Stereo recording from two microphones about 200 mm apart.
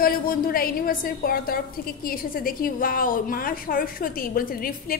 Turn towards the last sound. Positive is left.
turn(degrees=45)  # may be behind; listen again after turning